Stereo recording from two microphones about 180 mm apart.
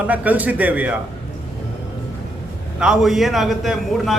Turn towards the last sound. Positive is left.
turn(degrees=0)  # may be behind; listen again after turning